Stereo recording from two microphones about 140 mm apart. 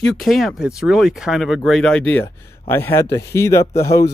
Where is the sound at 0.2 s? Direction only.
Centre (ahead or behind); by 3.6 s 20° left (ahead or behind).